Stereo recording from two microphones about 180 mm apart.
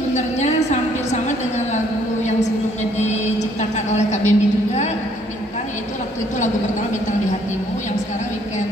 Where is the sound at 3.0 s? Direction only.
40° left (ahead or behind).